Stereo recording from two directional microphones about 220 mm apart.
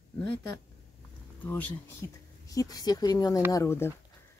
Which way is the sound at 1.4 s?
10° left (ahead or behind).